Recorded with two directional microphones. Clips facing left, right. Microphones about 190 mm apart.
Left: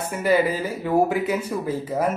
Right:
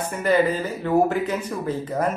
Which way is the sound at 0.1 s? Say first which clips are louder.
Even; 5° left (ahead or behind).